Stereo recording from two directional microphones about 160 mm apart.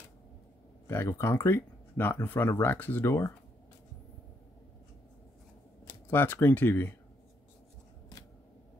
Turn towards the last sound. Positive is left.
turn(degrees=15)  # may be behind; listen again after turning